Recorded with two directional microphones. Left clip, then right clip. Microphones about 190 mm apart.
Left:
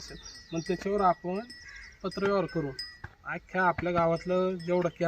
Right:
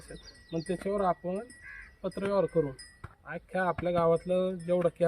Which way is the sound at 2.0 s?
10° right (ahead or behind).